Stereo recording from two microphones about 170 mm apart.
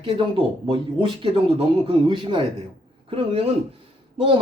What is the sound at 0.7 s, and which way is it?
A man's voice, 30° right (ahead or behind).